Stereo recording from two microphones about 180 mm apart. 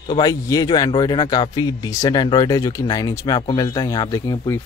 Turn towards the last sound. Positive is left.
turn(degrees=15)  # may be behind; listen again after turning